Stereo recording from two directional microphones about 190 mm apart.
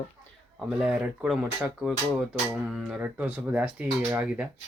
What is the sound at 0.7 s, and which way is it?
Speech, 5° right (ahead or behind).